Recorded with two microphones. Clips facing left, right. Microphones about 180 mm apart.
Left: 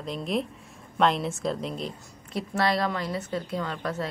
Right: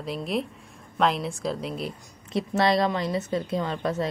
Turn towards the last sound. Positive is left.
turn(degrees=-20)  # may be behind; listen again after turning